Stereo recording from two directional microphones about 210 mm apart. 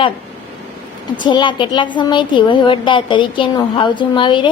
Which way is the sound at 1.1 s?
20° left (ahead or behind).